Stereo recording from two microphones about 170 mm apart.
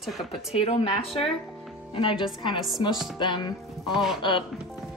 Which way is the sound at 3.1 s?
25° left (ahead or behind).